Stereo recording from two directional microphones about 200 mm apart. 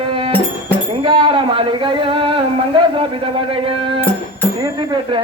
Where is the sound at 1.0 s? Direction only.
25° right (ahead or behind).